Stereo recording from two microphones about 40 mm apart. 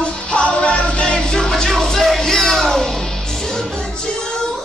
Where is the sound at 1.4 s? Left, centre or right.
Centre.